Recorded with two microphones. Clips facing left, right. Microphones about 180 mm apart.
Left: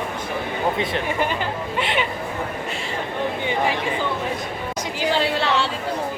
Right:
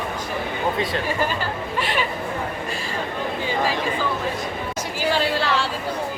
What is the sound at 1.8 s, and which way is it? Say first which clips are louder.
Chatter: left 1 dB; 20° left (ahead or behind).